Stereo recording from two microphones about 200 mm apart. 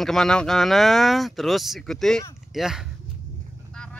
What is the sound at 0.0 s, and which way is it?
Speech, centre (ahead or behind).